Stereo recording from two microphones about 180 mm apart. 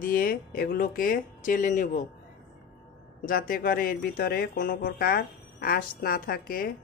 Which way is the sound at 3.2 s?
50° left (ahead or behind).